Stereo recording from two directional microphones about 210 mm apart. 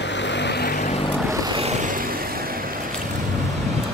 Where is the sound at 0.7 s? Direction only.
35° left (ahead or behind).